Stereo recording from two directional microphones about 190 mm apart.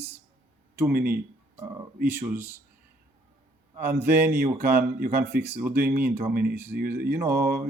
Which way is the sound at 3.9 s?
10° right (ahead or behind).